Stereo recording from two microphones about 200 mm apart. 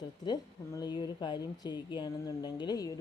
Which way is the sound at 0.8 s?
20° left (ahead or behind).